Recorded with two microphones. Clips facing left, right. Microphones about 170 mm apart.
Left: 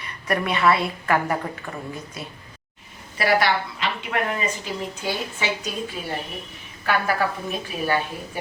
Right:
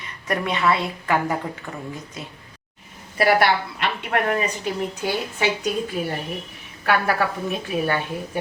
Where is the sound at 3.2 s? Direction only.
55° right (ahead or behind).